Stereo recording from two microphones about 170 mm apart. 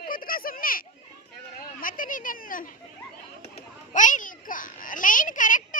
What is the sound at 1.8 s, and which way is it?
Speech, 55° left (ahead or behind).